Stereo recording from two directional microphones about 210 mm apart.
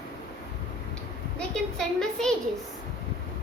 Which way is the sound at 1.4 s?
5° left (ahead or behind).